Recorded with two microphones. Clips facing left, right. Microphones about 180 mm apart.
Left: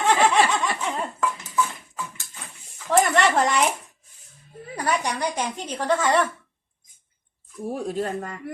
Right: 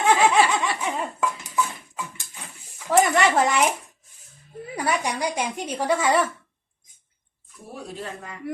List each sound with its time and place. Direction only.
0.2 s snicker: 10° right (ahead or behind)
0.8 s dishes: 10° right (ahead or behind)
2.9 s a sound: 5° right (ahead or behind)
4.7 s speech: 10° right (ahead or behind)
7.7 s speech: 45° left (ahead or behind)